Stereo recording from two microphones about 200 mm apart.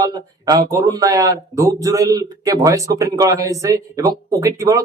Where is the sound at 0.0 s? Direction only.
20° right (ahead or behind).